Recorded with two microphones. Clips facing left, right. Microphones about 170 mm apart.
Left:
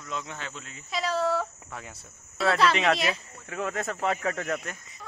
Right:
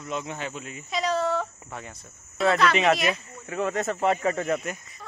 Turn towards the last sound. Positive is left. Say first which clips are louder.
# right 4 dB
turn(degrees=0)  # may be behind; listen again after turning